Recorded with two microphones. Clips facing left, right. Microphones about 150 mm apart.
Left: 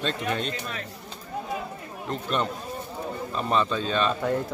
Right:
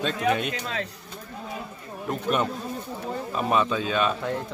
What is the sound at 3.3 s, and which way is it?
Speech, 10° right (ahead or behind).